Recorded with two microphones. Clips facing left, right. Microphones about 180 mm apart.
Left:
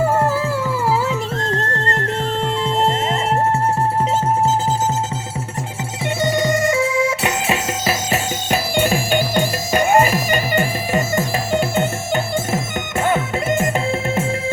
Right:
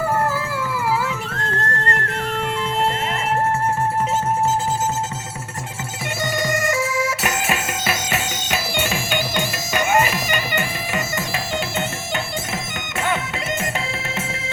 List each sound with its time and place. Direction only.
0.9 s music: 35° left (ahead or behind)
6.2 s music: 30° left (ahead or behind)
8.7 s music: 50° left (ahead or behind)
9.8 s music: 35° left (ahead or behind)